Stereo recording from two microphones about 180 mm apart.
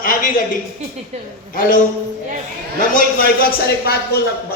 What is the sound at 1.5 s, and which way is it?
Speech, 50° left (ahead or behind).